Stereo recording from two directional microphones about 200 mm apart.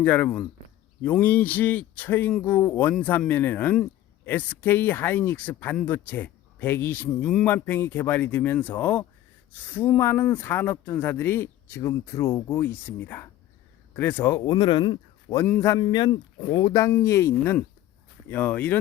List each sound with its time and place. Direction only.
0.0 s speech: 5° left (ahead or behind)